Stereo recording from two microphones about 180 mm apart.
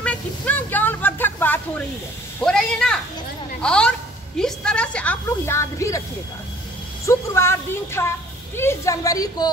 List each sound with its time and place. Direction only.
0.0 s a sound: 10° left (ahead or behind)
2.4 s a woman's voice: 5° left (ahead or behind)
7.1 s a woman's voice: 15° left (ahead or behind)